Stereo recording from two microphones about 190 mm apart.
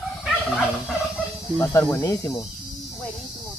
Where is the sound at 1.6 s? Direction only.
15° left (ahead or behind).